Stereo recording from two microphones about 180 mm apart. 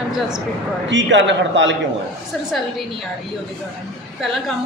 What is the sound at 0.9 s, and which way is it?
Speech, 90° right.